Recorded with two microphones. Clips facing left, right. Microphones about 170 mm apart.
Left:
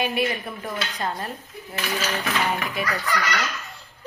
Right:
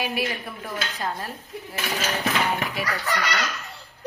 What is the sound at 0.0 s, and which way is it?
Speech, 5° right (ahead or behind).